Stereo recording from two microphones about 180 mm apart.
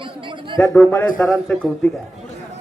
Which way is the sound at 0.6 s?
10° left (ahead or behind).